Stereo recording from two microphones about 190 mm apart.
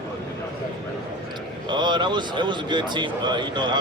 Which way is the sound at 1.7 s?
25° right (ahead or behind).